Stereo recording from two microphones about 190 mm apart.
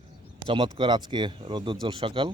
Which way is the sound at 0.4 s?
30° right (ahead or behind).